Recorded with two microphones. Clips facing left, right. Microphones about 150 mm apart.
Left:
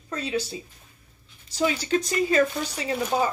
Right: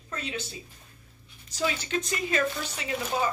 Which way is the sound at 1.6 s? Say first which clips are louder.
Left 6 dB; 30° left (ahead or behind).